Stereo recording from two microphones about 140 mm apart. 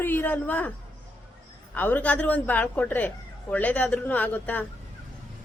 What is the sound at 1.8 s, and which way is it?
Speech, 10° left (ahead or behind).